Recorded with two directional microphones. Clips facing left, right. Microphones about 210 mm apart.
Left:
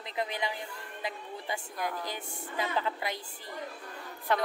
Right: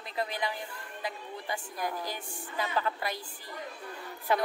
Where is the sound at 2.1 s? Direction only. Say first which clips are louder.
Even; 20° left (ahead or behind).